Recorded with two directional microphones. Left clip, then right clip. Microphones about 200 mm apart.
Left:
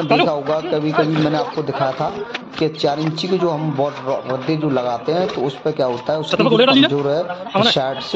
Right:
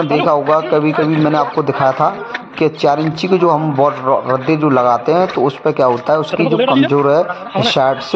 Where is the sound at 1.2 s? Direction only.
5° right (ahead or behind).